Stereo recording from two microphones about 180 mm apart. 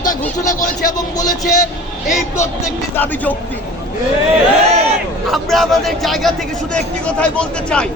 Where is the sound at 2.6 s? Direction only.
10° left (ahead or behind).